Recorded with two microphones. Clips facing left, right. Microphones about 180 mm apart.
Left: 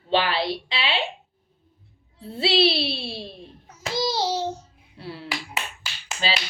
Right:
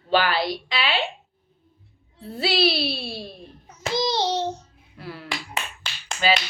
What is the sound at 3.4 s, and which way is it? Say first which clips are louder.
Babbling: right 2 dB; 5° left (ahead or behind).